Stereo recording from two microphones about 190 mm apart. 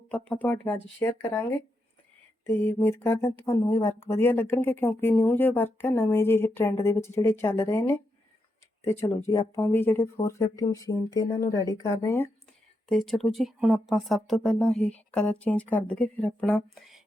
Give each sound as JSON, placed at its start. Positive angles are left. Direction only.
{"t": 0.1, "sound": "speech", "side_deg": 10}
{"t": 12.9, "sound": "speech", "side_deg": 0}